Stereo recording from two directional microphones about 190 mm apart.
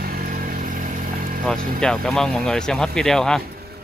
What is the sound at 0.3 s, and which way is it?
Vehicle, 45° right (ahead or behind).